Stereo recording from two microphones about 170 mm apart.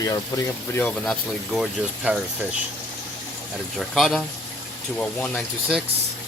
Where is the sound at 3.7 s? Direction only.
Centre (ahead or behind).